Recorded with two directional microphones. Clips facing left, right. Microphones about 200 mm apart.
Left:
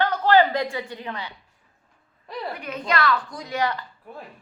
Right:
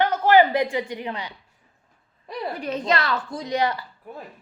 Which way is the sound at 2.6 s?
30° right (ahead or behind).